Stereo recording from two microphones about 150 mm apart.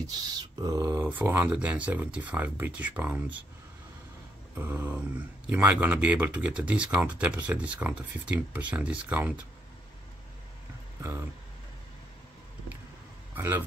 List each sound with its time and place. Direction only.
0.0 s speech: 25° right (ahead or behind); by 3.4 s 10° right (ahead or behind)
4.6 s speech: 15° right (ahead or behind)
11.0 s speech: 15° right (ahead or behind)
13.3 s a man's voice: 10° right (ahead or behind)